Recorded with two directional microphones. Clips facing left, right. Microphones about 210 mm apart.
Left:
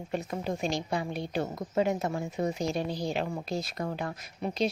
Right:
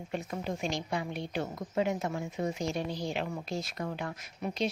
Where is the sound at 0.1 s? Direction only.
35° left (ahead or behind).